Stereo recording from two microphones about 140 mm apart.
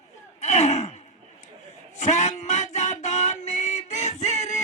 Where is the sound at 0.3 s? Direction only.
55° left (ahead or behind).